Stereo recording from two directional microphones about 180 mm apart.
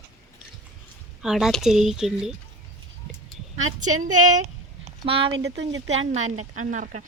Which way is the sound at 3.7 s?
45° right (ahead or behind).